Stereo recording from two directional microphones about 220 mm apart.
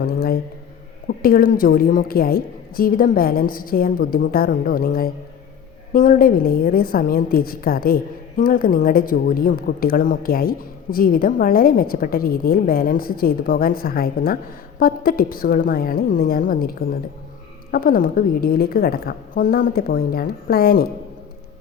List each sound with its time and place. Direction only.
0.0 s a man's voice: 45° left (ahead or behind)